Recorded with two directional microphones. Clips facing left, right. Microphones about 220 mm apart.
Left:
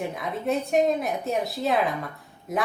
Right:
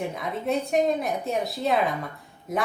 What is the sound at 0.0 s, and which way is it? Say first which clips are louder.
A woman's voice: even; centre (ahead or behind).